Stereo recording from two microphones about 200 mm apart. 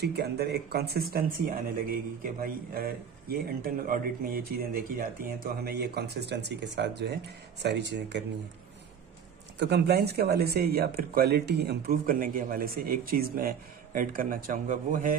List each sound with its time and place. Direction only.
0.0 s speech: 55° right (ahead or behind)
9.6 s speech: 55° right (ahead or behind)